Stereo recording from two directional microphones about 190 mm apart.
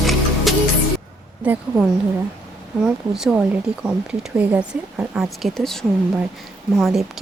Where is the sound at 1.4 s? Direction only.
10° right (ahead or behind).